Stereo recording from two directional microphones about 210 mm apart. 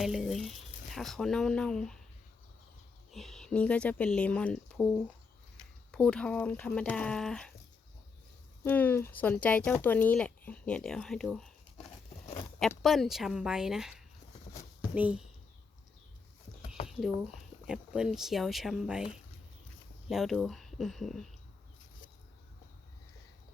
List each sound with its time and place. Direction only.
0.0 s speech: centre (ahead or behind)
3.1 s speech: centre (ahead or behind)
8.6 s speech: 10° left (ahead or behind)
12.2 s a sound: 30° left (ahead or behind)
12.5 s speech: centre (ahead or behind)
14.9 s speech: 5° right (ahead or behind)
16.8 s speech: centre (ahead or behind)
20.1 s speech: centre (ahead or behind)